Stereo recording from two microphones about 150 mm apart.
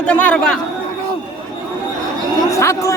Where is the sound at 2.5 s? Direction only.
20° left (ahead or behind).